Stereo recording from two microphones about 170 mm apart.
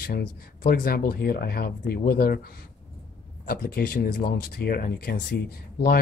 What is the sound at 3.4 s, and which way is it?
Speech, 60° left (ahead or behind).